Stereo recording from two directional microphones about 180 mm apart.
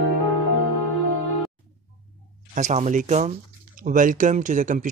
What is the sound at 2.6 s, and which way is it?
Speech, 40° right (ahead or behind).